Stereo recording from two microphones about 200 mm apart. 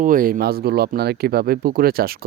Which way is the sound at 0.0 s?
45° right (ahead or behind).